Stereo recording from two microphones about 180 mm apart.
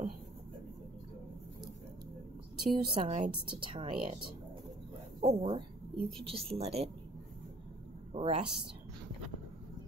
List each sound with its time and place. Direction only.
2.7 s a woman's voice: 30° right (ahead or behind)
8.1 s speech: 35° right (ahead or behind)